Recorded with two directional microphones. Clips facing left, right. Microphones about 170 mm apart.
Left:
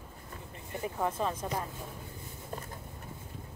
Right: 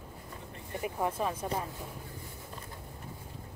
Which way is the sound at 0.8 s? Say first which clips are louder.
Even; 10° right (ahead or behind).